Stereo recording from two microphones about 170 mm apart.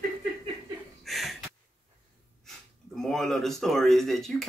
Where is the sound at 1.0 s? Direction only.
Centre (ahead or behind).